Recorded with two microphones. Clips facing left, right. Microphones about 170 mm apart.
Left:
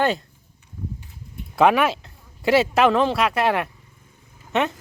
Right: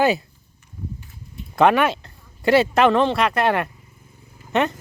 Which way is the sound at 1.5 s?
5° left (ahead or behind).